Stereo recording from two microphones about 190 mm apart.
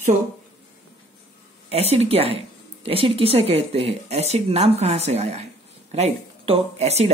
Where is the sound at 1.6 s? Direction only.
30° right (ahead or behind).